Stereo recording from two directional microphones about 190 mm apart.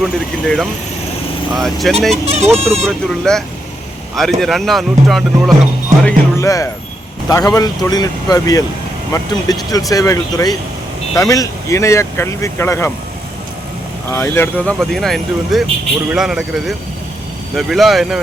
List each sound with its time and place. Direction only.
0.0 s speech: centre (ahead or behind)
2.2 s speech: 35° right (ahead or behind)
2.5 s speech: 5° left (ahead or behind)
6.1 s speech: 15° left (ahead or behind)
14.1 s speech: 10° left (ahead or behind)